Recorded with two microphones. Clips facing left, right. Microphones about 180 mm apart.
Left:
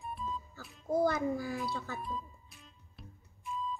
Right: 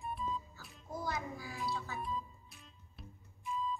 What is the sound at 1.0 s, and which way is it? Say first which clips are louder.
Speech: left 8 dB; 55° left (ahead or behind).